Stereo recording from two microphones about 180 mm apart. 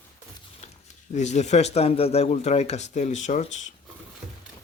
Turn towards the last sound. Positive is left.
turn(degrees=40)  # may be behind; listen again after turning